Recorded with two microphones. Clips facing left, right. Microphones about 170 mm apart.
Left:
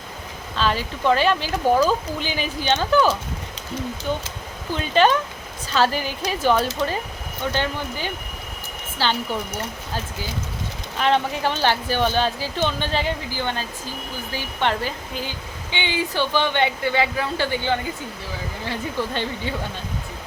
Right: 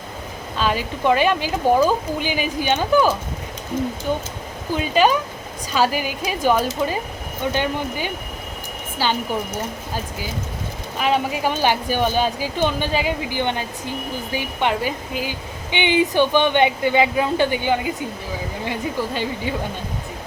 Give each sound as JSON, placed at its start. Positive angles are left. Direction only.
{"t": 0.6, "sound": "a woman's voice", "side_deg": -10}
{"t": 4.8, "sound": "a woman's voice", "side_deg": -10}
{"t": 11.0, "sound": "a woman's voice", "side_deg": -10}
{"t": 13.4, "sound": "a woman's voice", "side_deg": -20}